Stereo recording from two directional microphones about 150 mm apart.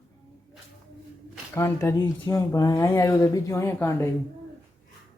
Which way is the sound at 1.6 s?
20° left (ahead or behind).